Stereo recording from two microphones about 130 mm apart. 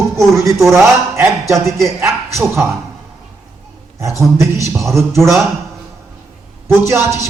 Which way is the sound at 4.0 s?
25° right (ahead or behind).